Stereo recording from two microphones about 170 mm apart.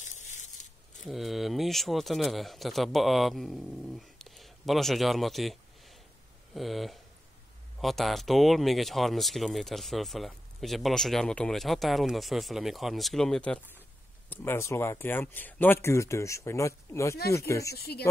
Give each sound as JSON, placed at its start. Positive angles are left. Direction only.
{"t": 0.0, "sound": "a sound", "side_deg": 45}
{"t": 0.9, "sound": "speech", "side_deg": 0}
{"t": 17.7, "sound": "speech", "side_deg": 70}